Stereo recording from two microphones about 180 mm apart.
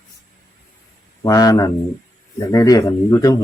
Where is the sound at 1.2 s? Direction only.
20° left (ahead or behind).